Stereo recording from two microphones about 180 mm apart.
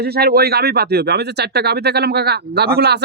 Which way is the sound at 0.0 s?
60° right (ahead or behind).